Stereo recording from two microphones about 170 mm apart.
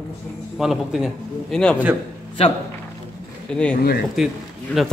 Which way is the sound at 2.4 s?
35° left (ahead or behind).